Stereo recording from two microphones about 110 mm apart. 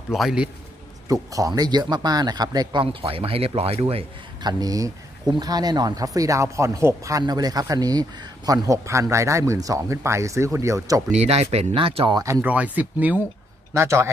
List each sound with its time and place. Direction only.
0.1 s a man's voice: 5° right (ahead or behind)
1.0 s speech: 30° right (ahead or behind)
2.8 s speech: 55° right (ahead or behind)
4.4 s speech: 35° right (ahead or behind)
11.1 s speech: 75° right (ahead or behind); by 12.1 s 60° right (ahead or behind)
12.1 s speech: 30° right (ahead or behind)
12.4 s speech: 15° right (ahead or behind)
13.7 s speech: 25° right (ahead or behind)